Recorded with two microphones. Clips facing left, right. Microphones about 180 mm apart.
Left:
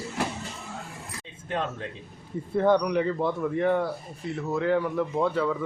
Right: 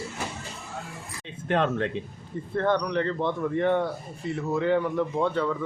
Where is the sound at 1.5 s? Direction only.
75° right (ahead or behind).